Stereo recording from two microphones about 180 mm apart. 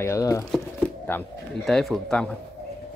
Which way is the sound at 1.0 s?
5° left (ahead or behind).